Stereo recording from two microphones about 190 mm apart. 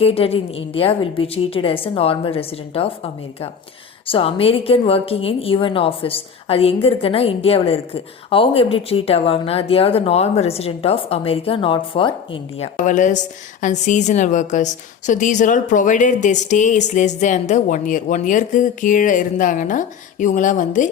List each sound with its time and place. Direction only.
0.0 s a woman's voice: 30° left (ahead or behind)